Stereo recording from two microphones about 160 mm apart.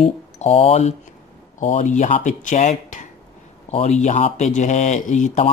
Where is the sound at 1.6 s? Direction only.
50° left (ahead or behind).